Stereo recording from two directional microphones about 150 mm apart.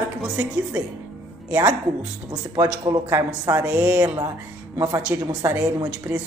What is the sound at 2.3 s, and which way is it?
Speech, 25° right (ahead or behind).